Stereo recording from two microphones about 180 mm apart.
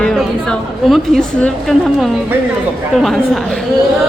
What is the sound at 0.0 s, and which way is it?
A woman's voice, 5° left (ahead or behind).